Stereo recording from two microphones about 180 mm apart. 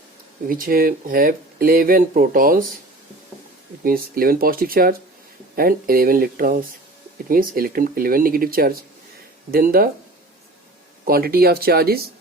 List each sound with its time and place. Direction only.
0.4 s speech: 50° right (ahead or behind)
3.8 s speech: 55° right (ahead or behind)
11.0 s speech: 55° right (ahead or behind)